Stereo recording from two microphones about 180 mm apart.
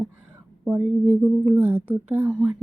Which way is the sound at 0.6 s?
5° right (ahead or behind).